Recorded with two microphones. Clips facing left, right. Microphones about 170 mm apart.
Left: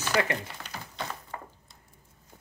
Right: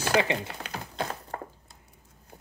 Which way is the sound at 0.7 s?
55° right (ahead or behind).